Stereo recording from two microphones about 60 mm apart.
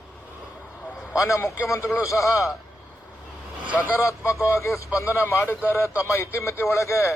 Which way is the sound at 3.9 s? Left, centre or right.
Left.